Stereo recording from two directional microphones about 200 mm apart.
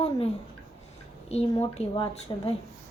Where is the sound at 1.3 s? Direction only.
30° left (ahead or behind).